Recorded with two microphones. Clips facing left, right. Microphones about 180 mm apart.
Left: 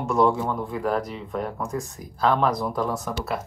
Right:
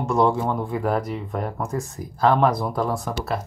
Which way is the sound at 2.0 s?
45° right (ahead or behind).